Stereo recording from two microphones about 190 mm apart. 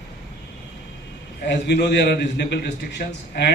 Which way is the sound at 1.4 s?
60° left (ahead or behind).